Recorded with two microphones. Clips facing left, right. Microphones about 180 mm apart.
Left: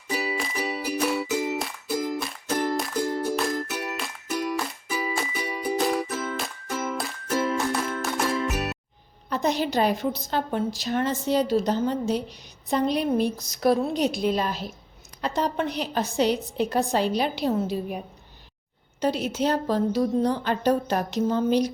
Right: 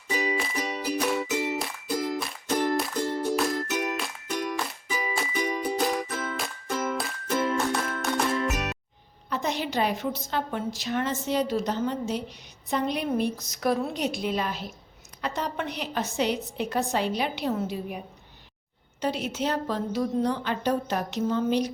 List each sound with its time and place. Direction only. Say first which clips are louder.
0.1 s music: right 1 dB; 5° left (ahead or behind)
9.3 s a woman's voice: left 4 dB; 40° left (ahead or behind)
19.0 s a woman's voice: left 4 dB; 40° left (ahead or behind)